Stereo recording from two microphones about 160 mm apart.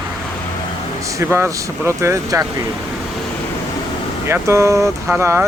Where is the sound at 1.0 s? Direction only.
20° right (ahead or behind).